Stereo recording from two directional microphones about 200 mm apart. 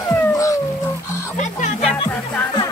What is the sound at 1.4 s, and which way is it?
Music, 35° left (ahead or behind).